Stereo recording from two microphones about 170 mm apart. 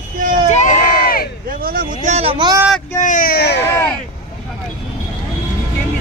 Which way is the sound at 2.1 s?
35° right (ahead or behind).